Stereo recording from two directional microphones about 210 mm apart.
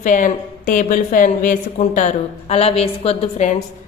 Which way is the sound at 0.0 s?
40° left (ahead or behind).